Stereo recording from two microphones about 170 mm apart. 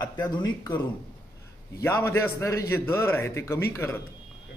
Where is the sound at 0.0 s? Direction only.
25° left (ahead or behind).